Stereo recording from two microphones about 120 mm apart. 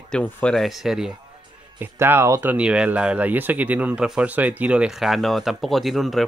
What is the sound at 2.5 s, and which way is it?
Speech, 10° right (ahead or behind).